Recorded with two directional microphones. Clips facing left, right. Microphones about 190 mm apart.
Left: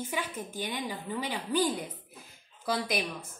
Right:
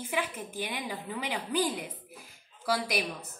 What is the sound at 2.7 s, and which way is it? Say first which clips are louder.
Speech: right 1 dB; 10° right (ahead or behind).